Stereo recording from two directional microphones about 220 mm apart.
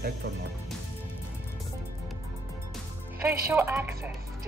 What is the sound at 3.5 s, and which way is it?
Speech, 10° right (ahead or behind).